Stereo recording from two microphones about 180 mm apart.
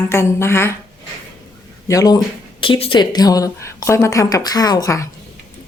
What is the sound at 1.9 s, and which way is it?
Speech, 20° left (ahead or behind).